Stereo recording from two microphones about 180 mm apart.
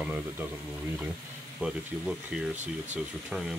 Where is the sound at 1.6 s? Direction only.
5° right (ahead or behind).